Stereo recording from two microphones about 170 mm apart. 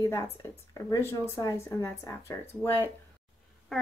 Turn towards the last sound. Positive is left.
turn(degrees=0)  # may be behind; listen again after turning